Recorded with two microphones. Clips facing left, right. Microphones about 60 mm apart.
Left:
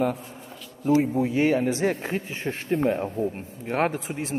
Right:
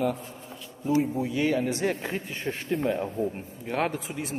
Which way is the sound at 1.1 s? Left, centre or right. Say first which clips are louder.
Left 4 dB; left.